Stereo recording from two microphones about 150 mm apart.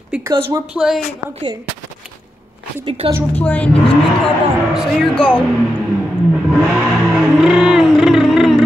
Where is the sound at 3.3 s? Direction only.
10° left (ahead or behind).